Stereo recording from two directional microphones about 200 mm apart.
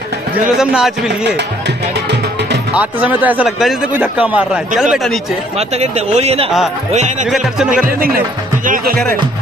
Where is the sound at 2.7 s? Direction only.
5° right (ahead or behind).